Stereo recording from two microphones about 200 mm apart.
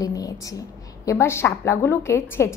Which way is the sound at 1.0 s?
15° left (ahead or behind).